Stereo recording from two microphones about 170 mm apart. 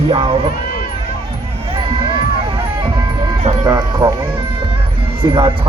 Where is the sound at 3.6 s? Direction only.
25° right (ahead or behind).